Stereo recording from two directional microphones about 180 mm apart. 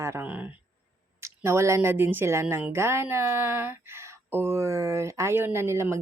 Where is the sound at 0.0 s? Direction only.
15° right (ahead or behind).